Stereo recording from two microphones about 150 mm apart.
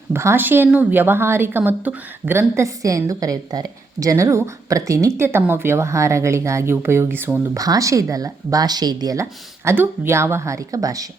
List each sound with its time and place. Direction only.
0.1 s a woman's voice: 15° right (ahead or behind)
9.6 s a woman's voice: 15° right (ahead or behind)